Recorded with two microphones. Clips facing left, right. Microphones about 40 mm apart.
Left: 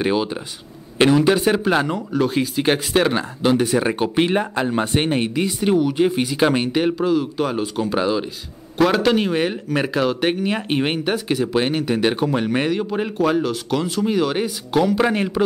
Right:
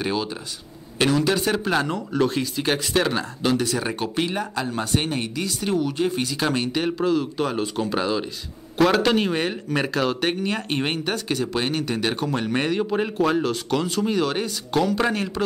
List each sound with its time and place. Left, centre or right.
0.0 s speech: centre
4.2 s speech: left; by 15.1 s centre
15.1 s speech: left